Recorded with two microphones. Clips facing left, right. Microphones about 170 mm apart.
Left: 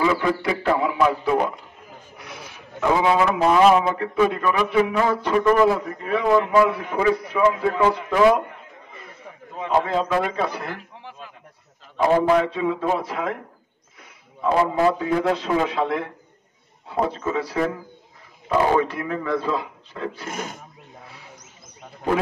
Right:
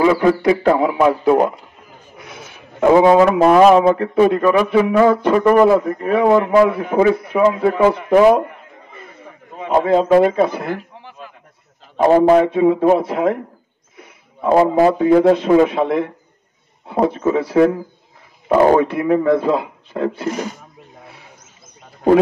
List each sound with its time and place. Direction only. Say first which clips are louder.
0.0 s a man's voice: right 8 dB; 45° right (ahead or behind)
7.4 s a man's voice: right 5 dB; 35° right (ahead or behind)
7.7 s a man's voice: right 7 dB; 55° right (ahead or behind)
9.7 s a man's voice: right 8 dB; 50° right (ahead or behind)
12.0 s a man's voice: right 7 dB; 45° right (ahead or behind)
14.4 s speech: right 7 dB; 45° right (ahead or behind)
20.2 s speech: right 9 dB; 50° left (ahead or behind)